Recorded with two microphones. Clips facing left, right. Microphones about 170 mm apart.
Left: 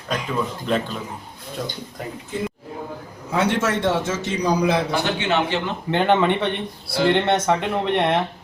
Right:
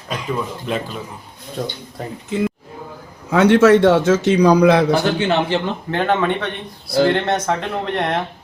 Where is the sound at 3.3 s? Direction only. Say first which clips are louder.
Right 10 dB; 80° right.